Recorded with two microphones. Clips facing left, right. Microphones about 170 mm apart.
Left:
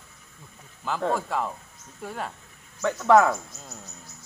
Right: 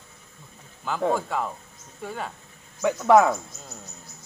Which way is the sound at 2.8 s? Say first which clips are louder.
Right 1 dB; 15° right (ahead or behind).